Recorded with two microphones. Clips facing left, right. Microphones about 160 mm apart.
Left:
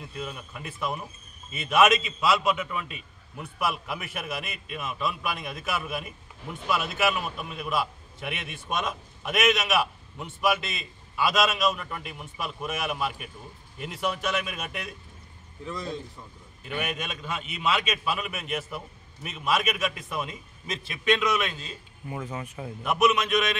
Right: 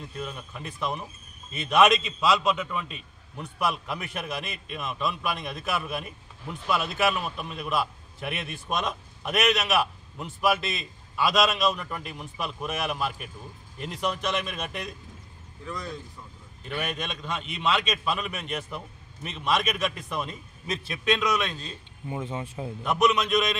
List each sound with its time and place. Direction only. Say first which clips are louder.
0.0 s a man's voice: even; 5° left (ahead or behind)
15.6 s speech: left 2 dB; 25° left (ahead or behind)
16.6 s a man's voice: even; 5° left (ahead or behind)
22.1 s speech: right 2 dB; 25° right (ahead or behind)
22.8 s a man's voice: even; 5° left (ahead or behind)